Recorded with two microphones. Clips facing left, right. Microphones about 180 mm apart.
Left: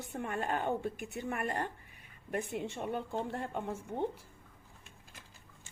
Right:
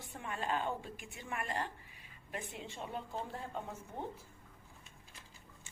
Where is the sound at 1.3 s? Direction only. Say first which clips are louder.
Left 3 dB; 45° left (ahead or behind).